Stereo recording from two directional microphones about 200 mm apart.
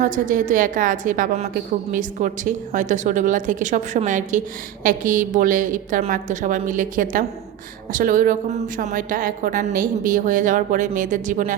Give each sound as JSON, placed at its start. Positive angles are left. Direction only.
{"t": 0.0, "sound": "a woman's voice", "side_deg": -40}